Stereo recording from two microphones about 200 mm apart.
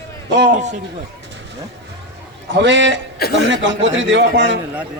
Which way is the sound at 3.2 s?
50° left (ahead or behind).